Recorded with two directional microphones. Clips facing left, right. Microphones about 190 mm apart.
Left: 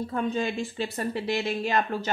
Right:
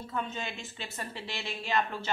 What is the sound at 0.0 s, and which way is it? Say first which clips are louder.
Speech: left 9 dB; 40° left (ahead or behind).